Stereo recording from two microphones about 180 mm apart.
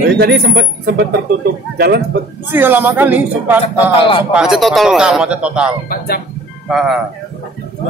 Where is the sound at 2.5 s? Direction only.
10° right (ahead or behind).